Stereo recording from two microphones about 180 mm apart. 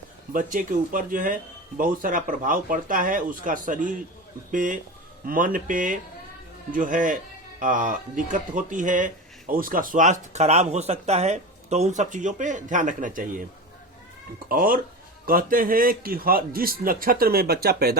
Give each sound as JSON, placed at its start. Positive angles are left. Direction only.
{"t": 0.3, "sound": "speech", "side_deg": -50}
{"t": 14.5, "sound": "speech", "side_deg": -50}